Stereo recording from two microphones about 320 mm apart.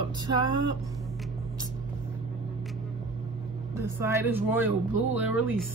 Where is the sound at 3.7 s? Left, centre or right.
Centre.